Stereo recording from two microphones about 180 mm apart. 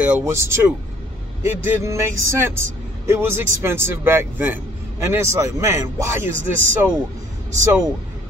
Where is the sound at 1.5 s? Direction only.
15° right (ahead or behind).